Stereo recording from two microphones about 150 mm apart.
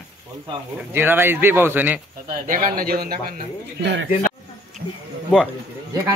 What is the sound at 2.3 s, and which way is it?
Speech, 65° right (ahead or behind).